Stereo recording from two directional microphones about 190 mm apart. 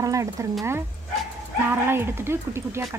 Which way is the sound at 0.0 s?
15° right (ahead or behind).